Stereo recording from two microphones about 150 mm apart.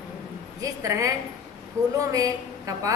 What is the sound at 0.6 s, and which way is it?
A woman's voice, 20° right (ahead or behind).